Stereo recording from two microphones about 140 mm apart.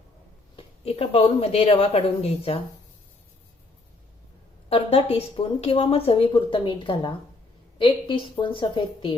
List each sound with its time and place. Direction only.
0.5 s a woman's voice: 45° left (ahead or behind)
4.7 s a woman's voice: 45° left (ahead or behind)